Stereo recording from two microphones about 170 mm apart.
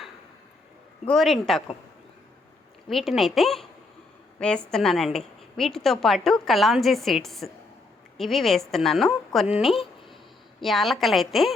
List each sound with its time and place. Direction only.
1.0 s a woman's voice: centre (ahead or behind)
2.9 s a woman's voice: centre (ahead or behind)